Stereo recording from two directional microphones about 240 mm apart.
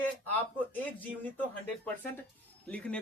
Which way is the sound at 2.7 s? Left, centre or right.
Centre.